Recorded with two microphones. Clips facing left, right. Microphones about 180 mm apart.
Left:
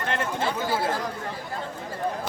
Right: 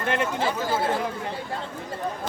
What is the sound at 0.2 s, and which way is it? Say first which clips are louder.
Speech: right 2 dB; 10° right (ahead or behind).